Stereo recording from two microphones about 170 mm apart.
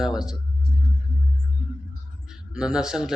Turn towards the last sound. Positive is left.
turn(degrees=-5)  # may be behind; listen again after turning